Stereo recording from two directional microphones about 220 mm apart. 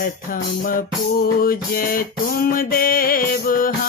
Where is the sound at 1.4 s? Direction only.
40° left (ahead or behind).